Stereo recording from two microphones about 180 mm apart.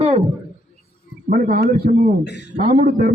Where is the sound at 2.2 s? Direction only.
70° left (ahead or behind).